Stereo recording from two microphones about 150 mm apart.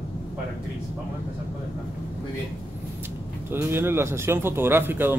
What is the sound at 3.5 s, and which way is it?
Speech, 15° right (ahead or behind).